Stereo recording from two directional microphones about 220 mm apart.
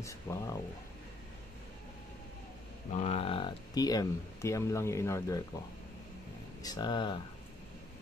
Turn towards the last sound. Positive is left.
turn(degrees=20)  # may be behind; listen again after turning